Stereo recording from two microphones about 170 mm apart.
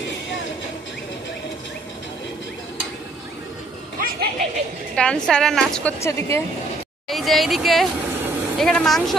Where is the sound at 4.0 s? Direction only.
60° right (ahead or behind).